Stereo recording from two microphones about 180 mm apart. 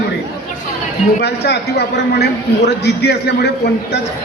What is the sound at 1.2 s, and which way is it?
A man's voice, 65° left (ahead or behind).